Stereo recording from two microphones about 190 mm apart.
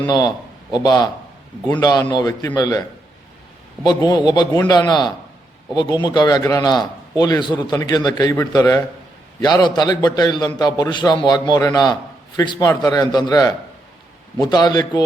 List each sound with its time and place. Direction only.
0.0 s a man's voice: 20° left (ahead or behind)
3.8 s a man's voice: 20° left (ahead or behind)